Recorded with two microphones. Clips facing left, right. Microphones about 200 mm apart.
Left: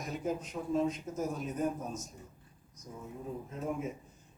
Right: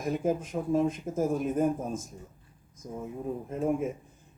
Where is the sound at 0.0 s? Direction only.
50° right (ahead or behind).